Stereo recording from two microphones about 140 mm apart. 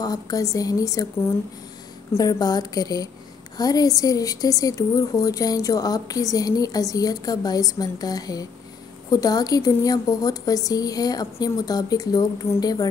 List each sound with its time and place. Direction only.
0.0 s a woman's voice: 25° left (ahead or behind)
2.1 s a woman's voice: 25° left (ahead or behind)